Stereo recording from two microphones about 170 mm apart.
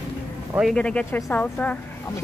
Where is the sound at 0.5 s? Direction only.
Centre (ahead or behind).